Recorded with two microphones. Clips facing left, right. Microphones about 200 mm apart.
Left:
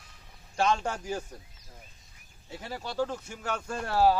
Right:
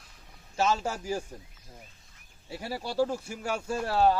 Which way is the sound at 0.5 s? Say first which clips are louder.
Even; 5° right (ahead or behind).